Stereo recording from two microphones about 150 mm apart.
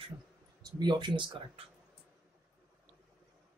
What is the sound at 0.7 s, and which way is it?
Speech, 30° right (ahead or behind).